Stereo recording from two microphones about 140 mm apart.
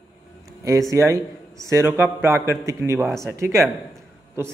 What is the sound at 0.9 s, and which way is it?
A man's voice, 20° right (ahead or behind).